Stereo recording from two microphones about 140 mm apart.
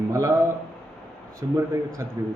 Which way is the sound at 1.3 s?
20° right (ahead or behind).